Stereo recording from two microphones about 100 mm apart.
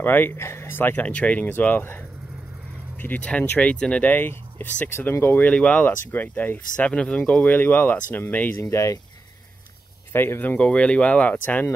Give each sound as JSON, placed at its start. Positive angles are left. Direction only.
{"t": 0.0, "sound": "speech", "side_deg": 20}
{"t": 8.5, "sound": "speech", "side_deg": 30}
{"t": 10.1, "sound": "speech", "side_deg": 20}